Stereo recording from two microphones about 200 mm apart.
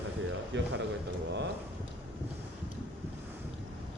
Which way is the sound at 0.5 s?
65° right (ahead or behind).